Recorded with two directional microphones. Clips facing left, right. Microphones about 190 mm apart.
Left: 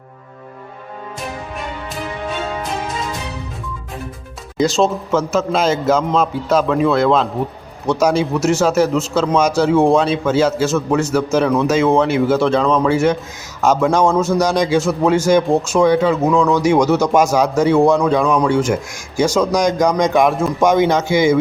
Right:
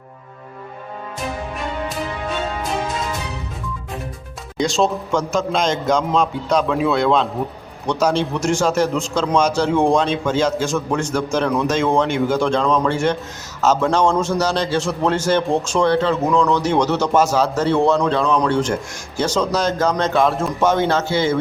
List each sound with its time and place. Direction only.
4.5 s a man's voice: centre (ahead or behind)